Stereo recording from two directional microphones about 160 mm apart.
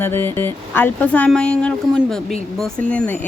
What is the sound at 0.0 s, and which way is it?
Speech, 15° left (ahead or behind).